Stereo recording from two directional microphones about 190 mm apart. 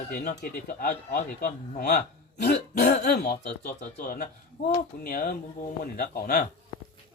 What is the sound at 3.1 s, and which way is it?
Speech, 60° left (ahead or behind).